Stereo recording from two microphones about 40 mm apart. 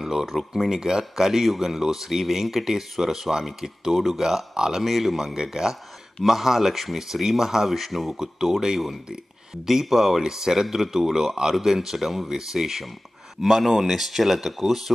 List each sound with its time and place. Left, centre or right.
0.0 s speech: centre
4.8 s speech: centre
5.2 s speech: centre